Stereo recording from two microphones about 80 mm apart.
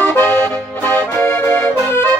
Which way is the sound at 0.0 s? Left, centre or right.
Left.